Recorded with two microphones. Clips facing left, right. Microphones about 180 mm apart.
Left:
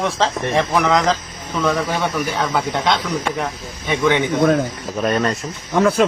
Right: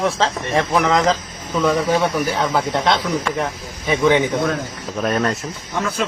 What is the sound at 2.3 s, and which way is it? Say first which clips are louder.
Speech: right 1 dB; centre (ahead or behind).